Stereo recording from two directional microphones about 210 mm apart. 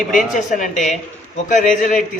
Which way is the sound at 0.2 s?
40° left (ahead or behind).